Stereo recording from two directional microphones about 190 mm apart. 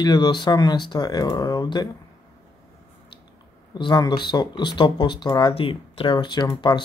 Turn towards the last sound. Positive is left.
turn(degrees=25)  # may be behind; listen again after turning